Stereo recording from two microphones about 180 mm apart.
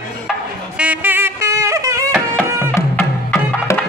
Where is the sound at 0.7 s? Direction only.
10° right (ahead or behind).